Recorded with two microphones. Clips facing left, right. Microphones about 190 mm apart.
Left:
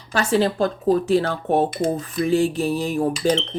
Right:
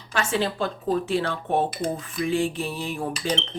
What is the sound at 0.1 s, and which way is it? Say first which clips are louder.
Speech: left 6 dB; 40° left (ahead or behind).